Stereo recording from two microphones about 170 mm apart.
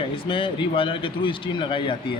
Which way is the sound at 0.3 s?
30° left (ahead or behind).